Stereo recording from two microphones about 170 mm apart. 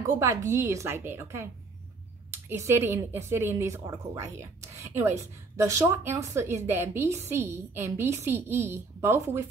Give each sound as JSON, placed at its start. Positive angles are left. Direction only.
{"t": 0.0, "sound": "a woman's voice", "side_deg": -20}
{"t": 2.5, "sound": "a woman's voice", "side_deg": -15}